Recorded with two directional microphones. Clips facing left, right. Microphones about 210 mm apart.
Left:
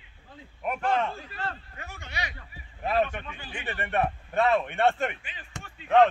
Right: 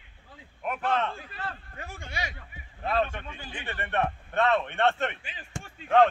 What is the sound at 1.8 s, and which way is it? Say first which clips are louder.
Speech: right 2 dB; 50° right (ahead or behind).